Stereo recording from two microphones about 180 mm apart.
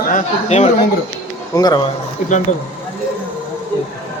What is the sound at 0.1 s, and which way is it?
Speech, 40° left (ahead or behind).